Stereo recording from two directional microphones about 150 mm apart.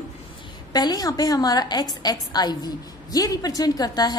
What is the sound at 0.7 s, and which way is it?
A woman's voice, 25° left (ahead or behind).